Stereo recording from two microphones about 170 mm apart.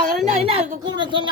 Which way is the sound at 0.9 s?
25° right (ahead or behind).